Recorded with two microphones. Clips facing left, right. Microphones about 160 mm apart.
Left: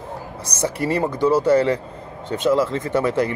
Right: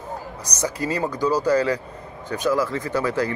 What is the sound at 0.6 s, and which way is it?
Speech, 25° left (ahead or behind).